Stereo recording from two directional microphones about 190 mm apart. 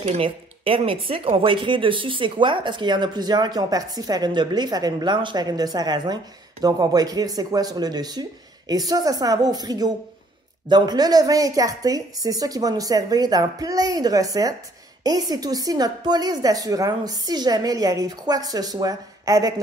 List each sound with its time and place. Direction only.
0.0 s speech: 30° right (ahead or behind)